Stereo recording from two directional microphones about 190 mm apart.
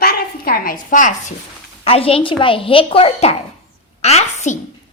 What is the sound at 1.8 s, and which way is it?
A child's voice, 30° left (ahead or behind).